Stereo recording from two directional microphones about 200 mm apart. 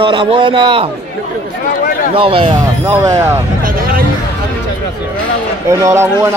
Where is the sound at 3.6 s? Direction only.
45° right (ahead or behind).